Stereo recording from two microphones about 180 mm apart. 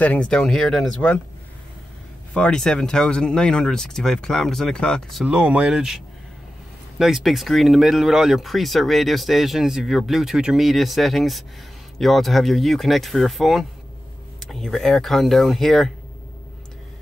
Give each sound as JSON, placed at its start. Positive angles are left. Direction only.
{"t": 0.0, "sound": "speech", "side_deg": 5}
{"t": 2.3, "sound": "speech", "side_deg": 5}
{"t": 7.0, "sound": "speech", "side_deg": 0}